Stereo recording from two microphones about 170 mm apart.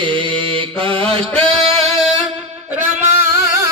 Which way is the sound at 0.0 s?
30° right (ahead or behind).